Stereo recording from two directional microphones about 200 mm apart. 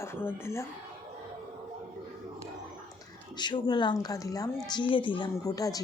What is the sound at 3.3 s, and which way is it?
Speech, 20° left (ahead or behind).